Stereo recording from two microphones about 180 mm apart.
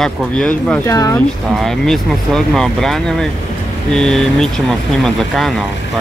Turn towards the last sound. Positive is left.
turn(degrees=0)  # may be behind; listen again after turning